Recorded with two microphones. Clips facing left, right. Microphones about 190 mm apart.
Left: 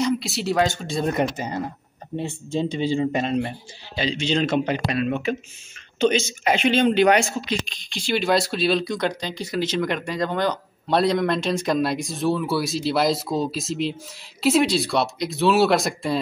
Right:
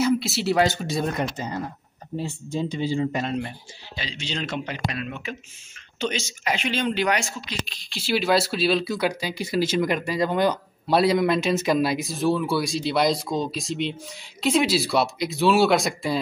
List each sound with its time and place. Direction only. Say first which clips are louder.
0.0 s speech: right 1 dB; centre (ahead or behind)
1.1 s speech: left 4 dB; 20° left (ahead or behind)
4.5 s speech: left 8 dB; 55° left (ahead or behind)
5.9 s speech: left 8 dB; 25° left (ahead or behind)
7.1 s speech: left 7 dB; 55° left (ahead or behind)
7.6 s speech: left 2 dB; 5° right (ahead or behind)